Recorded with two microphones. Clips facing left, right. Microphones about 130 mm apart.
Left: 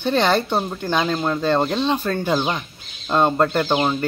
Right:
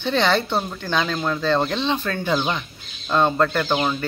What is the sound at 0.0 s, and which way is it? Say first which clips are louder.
Speech: left 2 dB; 10° left (ahead or behind).